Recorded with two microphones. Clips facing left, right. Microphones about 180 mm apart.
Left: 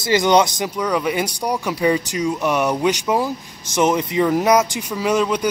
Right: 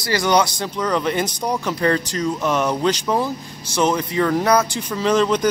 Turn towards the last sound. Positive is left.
turn(degrees=5)  # may be behind; listen again after turning